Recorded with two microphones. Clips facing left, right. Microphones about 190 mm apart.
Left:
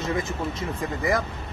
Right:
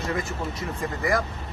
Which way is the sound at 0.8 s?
20° left (ahead or behind).